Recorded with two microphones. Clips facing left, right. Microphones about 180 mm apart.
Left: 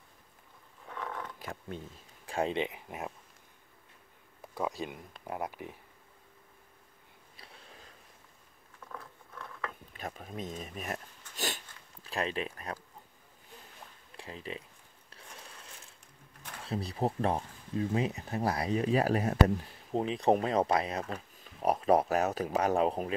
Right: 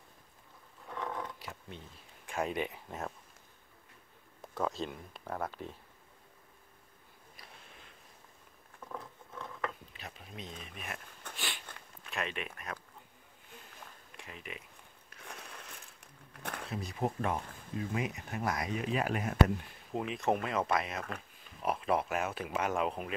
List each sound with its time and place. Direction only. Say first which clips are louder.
1.4 s a sound: left 6 dB; 50° left (ahead or behind)
2.2 s speech: left 3 dB; 30° left (ahead or behind)
4.6 s speech: even; 10° left (ahead or behind)
7.3 s a sound: left 2 dB; 35° left (ahead or behind)
8.9 s patter: right 2 dB; 20° right (ahead or behind)
9.9 s speech: left 7 dB; 45° left (ahead or behind)
11.3 s a sound: left 6 dB; 40° left (ahead or behind)
12.0 s speech: left 5 dB; 35° left (ahead or behind)
14.1 s speech: left 6 dB; 30° left (ahead or behind)
16.6 s speech: left 4 dB; 35° left (ahead or behind)